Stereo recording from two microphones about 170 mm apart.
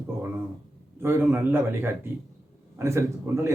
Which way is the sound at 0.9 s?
15° right (ahead or behind).